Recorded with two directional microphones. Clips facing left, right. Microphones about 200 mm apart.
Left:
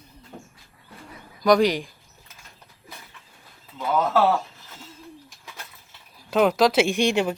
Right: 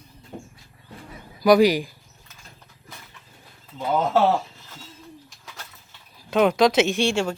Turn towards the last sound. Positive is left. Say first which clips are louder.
# even
turn(degrees=15)  # may be behind; listen again after turning